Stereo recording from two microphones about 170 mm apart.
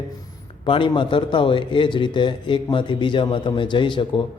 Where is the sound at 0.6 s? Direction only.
30° left (ahead or behind).